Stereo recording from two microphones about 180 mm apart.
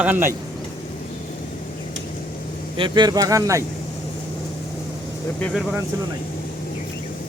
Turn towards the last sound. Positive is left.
turn(degrees=10)  # may be behind; listen again after turning